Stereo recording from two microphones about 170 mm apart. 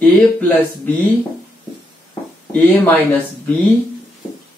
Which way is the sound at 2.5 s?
10° left (ahead or behind).